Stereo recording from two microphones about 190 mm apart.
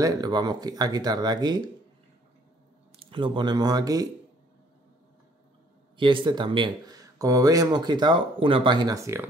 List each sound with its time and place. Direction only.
0.0 s speech: 20° right (ahead or behind)
3.0 s speech: 25° right (ahead or behind)
5.9 s speech: 25° right (ahead or behind)